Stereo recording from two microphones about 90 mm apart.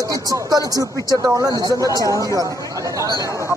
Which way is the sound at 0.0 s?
40° right (ahead or behind).